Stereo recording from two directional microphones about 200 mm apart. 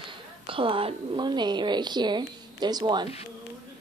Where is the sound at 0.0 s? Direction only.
25° right (ahead or behind).